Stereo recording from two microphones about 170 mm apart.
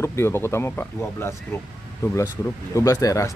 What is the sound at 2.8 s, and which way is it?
Speech, 20° left (ahead or behind).